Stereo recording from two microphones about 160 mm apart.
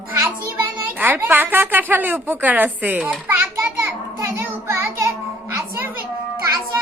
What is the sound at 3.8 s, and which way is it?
Music, 15° right (ahead or behind).